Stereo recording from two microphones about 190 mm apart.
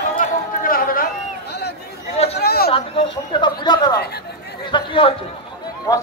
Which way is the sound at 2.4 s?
55° left (ahead or behind).